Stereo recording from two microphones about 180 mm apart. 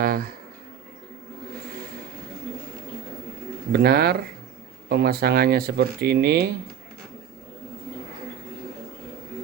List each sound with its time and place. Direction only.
0.0 s speech: 55° right (ahead or behind)
3.7 s speech: 60° right (ahead or behind)